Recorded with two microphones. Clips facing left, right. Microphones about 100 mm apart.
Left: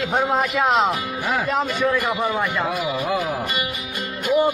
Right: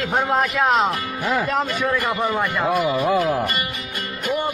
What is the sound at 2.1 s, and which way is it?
Music, 10° left (ahead or behind).